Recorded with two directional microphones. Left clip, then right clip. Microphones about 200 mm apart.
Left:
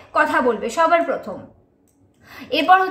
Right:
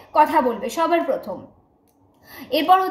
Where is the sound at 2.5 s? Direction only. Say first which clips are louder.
Left 2 dB; 10° left (ahead or behind).